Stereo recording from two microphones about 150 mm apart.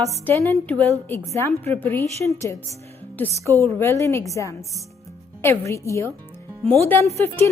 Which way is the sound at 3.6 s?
15° left (ahead or behind).